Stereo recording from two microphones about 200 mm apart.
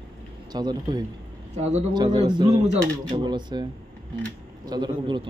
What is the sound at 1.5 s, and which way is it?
Speech, 35° right (ahead or behind).